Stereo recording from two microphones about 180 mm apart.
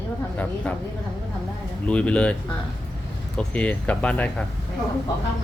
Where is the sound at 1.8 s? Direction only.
5° left (ahead or behind).